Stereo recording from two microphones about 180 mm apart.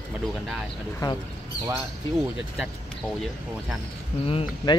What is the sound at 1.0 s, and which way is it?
Speech, 20° left (ahead or behind).